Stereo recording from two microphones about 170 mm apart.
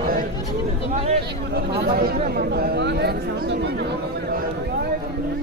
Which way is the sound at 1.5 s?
65° right (ahead or behind).